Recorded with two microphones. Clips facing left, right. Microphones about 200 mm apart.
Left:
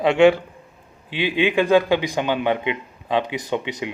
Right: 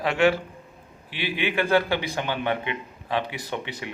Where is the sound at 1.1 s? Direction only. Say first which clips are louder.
Left 7 dB; 20° left (ahead or behind).